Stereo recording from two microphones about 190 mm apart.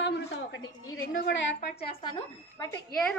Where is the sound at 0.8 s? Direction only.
90° left.